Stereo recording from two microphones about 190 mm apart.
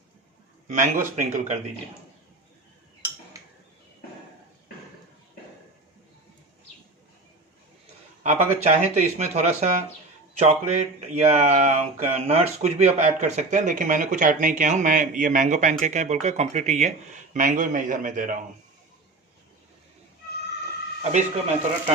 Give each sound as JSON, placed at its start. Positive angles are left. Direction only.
{"t": 0.7, "sound": "speech", "side_deg": -40}
{"t": 8.2, "sound": "a man's voice", "side_deg": -35}
{"t": 21.0, "sound": "speech", "side_deg": -40}